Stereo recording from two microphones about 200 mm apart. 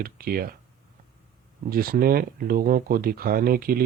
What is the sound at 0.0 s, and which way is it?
Speech, 45° right (ahead or behind).